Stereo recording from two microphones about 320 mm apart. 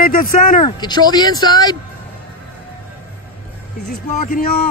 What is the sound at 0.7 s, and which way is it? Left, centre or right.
Speech, centre.